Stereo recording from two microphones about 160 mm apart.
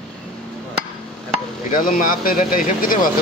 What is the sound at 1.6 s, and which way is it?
Speech, 60° left (ahead or behind).